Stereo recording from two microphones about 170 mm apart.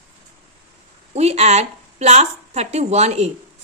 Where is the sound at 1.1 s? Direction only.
40° right (ahead or behind).